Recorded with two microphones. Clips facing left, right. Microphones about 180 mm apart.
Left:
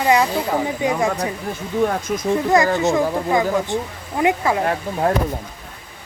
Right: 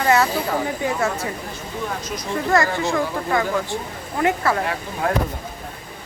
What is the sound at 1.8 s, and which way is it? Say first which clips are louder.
Speech: left 9 dB; 50° left (ahead or behind).